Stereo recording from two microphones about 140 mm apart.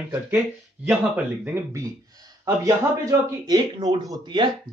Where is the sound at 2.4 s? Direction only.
25° right (ahead or behind).